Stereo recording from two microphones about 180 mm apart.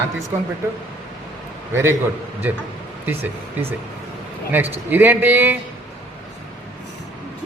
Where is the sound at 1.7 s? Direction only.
15° right (ahead or behind).